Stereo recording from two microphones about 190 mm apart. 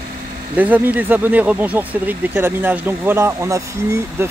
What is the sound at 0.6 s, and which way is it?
Speech, 10° right (ahead or behind).